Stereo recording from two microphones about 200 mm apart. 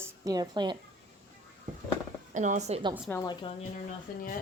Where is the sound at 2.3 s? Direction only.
35° right (ahead or behind).